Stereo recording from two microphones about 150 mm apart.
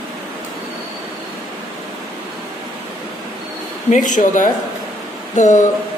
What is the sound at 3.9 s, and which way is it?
A man's voice, 60° left (ahead or behind).